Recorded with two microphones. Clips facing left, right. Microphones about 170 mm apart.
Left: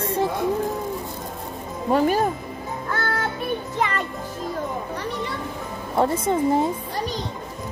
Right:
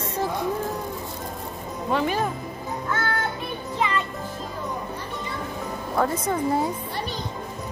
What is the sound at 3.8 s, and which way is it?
Music, 50° left (ahead or behind).